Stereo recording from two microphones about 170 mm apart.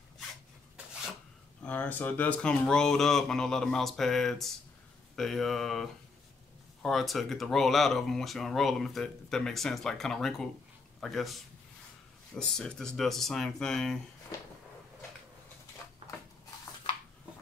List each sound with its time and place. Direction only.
1.6 s a man's voice: 10° left (ahead or behind)
12.4 s speech: 5° left (ahead or behind)
14.3 s a sound: 20° left (ahead or behind)